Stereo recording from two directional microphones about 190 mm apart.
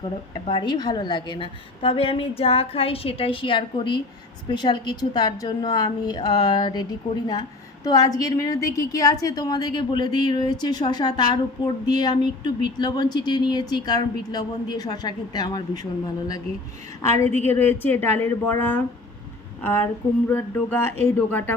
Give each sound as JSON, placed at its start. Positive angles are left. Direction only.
{"t": 0.3, "sound": "a woman's voice", "side_deg": 25}
{"t": 7.9, "sound": "a woman's voice", "side_deg": 20}